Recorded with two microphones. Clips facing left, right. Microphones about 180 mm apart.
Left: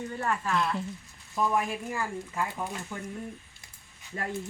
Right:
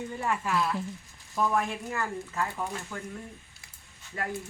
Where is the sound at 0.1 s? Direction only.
10° right (ahead or behind); by 3.0 s 15° left (ahead or behind).